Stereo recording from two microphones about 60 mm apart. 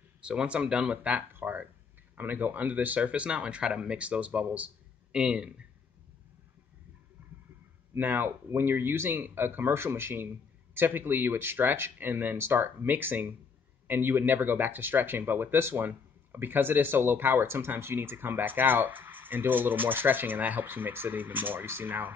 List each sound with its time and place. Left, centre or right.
0.2 s speech: centre
1.3 s a sound: right
2.1 s speech: right; by 5.7 s centre
7.2 s stomach rumble: right
7.9 s speech: right